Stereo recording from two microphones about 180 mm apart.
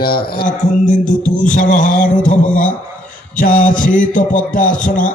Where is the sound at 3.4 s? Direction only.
45° left (ahead or behind).